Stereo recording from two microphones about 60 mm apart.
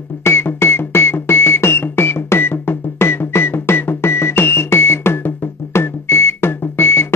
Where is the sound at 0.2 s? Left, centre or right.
Left.